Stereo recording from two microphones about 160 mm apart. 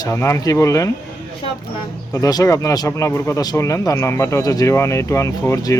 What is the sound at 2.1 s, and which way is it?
Speech, 20° left (ahead or behind).